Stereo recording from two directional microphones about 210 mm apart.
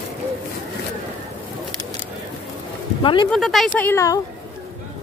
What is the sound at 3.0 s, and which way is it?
Speech, 20° left (ahead or behind).